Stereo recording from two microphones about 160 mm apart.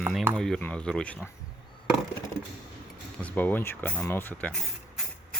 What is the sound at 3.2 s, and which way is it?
Speech, 10° left (ahead or behind).